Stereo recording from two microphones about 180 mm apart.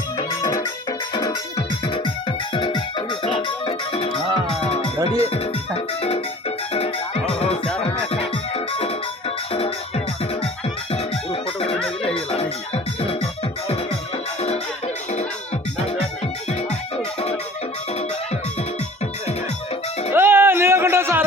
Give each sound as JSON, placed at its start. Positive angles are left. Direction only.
{"t": 0.2, "sound": "music", "side_deg": 20}
{"t": 10.9, "sound": "music", "side_deg": 35}
{"t": 20.1, "sound": "a sound", "side_deg": -10}